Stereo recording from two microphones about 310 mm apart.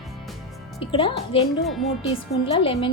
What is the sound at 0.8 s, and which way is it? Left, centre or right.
Speech, centre.